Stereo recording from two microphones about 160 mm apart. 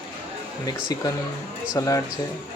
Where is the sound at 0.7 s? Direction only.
25° left (ahead or behind).